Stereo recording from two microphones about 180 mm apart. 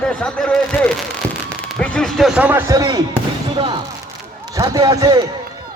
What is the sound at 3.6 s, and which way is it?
Basketball bounce, 25° right (ahead or behind).